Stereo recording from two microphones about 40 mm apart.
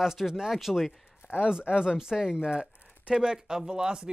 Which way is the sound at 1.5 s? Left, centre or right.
Centre.